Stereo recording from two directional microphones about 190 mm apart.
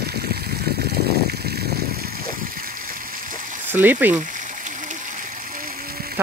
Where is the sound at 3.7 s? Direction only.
10° right (ahead or behind).